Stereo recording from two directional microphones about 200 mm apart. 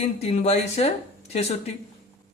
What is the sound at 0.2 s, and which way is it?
Speech, 35° left (ahead or behind).